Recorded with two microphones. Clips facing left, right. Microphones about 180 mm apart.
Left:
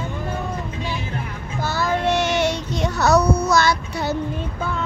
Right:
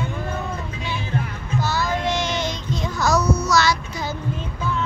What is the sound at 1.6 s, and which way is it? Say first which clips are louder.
Child singing: left 3 dB; 55° left (ahead or behind).